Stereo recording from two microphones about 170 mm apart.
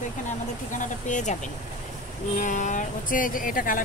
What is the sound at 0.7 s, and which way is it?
Speech, 45° left (ahead or behind).